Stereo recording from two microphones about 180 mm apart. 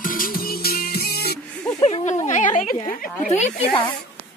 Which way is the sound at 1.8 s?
40° left (ahead or behind).